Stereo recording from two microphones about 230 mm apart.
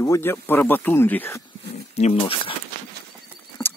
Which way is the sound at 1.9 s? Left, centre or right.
Left.